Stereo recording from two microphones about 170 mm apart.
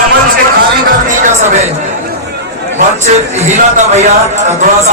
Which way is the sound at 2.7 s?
45° right (ahead or behind).